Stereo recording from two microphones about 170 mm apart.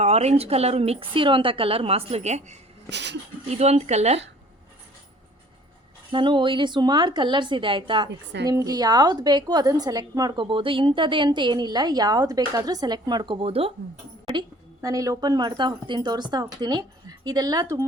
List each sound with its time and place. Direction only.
0.0 s a woman's voice: 40° right (ahead or behind)
2.9 s speech: 90° right
3.5 s a woman's voice: 40° right (ahead or behind)
6.1 s a woman's voice: 30° right (ahead or behind)
14.3 s a woman's voice: 20° right (ahead or behind)